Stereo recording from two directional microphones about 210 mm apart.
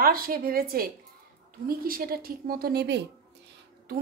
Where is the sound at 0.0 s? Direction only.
45° right (ahead or behind).